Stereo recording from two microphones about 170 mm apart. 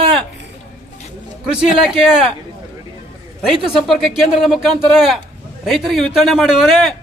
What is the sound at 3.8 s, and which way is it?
A man's voice, centre (ahead or behind).